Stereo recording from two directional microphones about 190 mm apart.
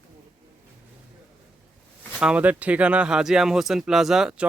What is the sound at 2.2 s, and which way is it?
A man's voice, 5° right (ahead or behind).